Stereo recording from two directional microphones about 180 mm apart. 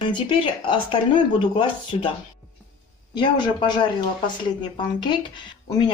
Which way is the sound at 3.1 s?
25° left (ahead or behind).